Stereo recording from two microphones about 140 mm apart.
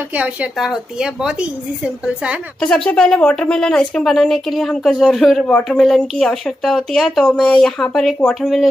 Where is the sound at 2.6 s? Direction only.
5° left (ahead or behind).